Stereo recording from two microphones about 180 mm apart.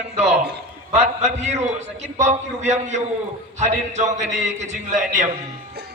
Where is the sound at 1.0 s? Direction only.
40° right (ahead or behind).